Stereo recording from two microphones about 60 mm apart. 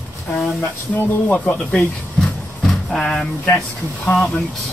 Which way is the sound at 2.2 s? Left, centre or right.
Centre.